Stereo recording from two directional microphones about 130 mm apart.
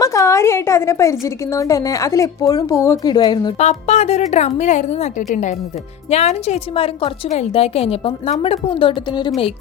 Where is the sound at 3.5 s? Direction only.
60° left (ahead or behind).